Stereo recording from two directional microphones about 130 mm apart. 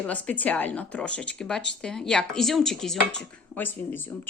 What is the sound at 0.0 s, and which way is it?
A woman's voice, 10° left (ahead or behind).